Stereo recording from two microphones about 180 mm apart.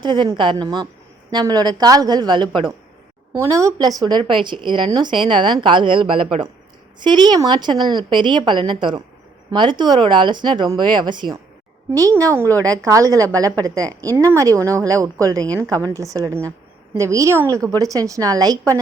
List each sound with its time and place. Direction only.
0.0 s speech: 25° right (ahead or behind)
3.3 s a woman's voice: 15° right (ahead or behind)